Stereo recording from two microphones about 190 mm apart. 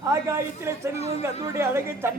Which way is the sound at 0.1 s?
15° right (ahead or behind).